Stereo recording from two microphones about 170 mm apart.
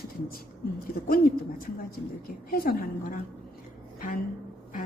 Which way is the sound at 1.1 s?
60° left (ahead or behind).